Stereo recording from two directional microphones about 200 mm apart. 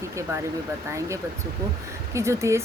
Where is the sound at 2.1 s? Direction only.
15° right (ahead or behind).